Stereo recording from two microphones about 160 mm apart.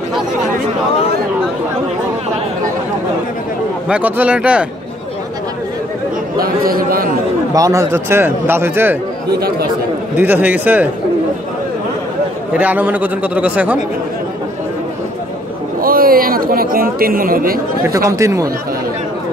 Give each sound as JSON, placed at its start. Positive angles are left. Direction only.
{"t": 3.9, "sound": "a man's voice", "side_deg": -10}
{"t": 6.3, "sound": "a man's voice", "side_deg": -65}
{"t": 7.5, "sound": "a man's voice", "side_deg": -20}
{"t": 10.1, "sound": "a man's voice", "side_deg": -10}
{"t": 12.5, "sound": "a man's voice", "side_deg": -10}
{"t": 15.8, "sound": "speech", "side_deg": -65}
{"t": 17.8, "sound": "speech", "side_deg": -20}